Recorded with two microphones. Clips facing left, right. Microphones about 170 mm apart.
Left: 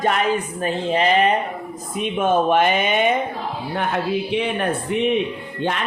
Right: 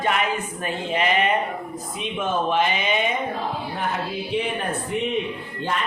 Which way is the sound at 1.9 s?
55° left (ahead or behind).